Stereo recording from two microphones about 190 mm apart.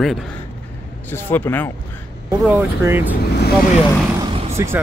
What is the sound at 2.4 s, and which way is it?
Speech, 10° right (ahead or behind).